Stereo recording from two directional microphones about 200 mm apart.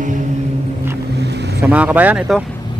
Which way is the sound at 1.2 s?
55° right (ahead or behind).